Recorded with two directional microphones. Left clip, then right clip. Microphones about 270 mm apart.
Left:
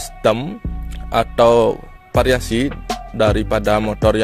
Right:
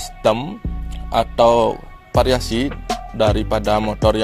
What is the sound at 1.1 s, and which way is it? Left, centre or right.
Speech, left.